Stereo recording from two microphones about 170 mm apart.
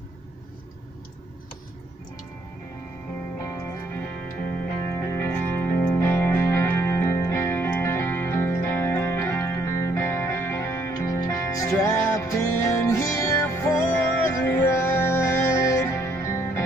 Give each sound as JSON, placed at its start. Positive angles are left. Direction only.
{"t": 3.4, "sound": "music", "side_deg": 20}
{"t": 5.0, "sound": "music", "side_deg": 15}